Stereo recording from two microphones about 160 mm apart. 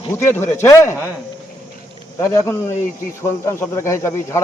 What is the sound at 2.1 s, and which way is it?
A man's voice, 15° left (ahead or behind).